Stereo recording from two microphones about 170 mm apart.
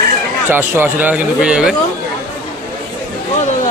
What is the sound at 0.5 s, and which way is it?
Speech, 15° right (ahead or behind).